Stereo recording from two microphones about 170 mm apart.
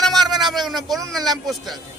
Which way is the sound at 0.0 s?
Centre (ahead or behind).